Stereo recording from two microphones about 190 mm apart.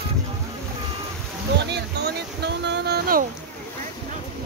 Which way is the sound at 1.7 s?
65° right (ahead or behind).